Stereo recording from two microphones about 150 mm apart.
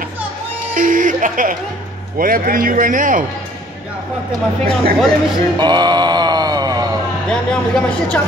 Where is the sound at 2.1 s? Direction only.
70° right (ahead or behind).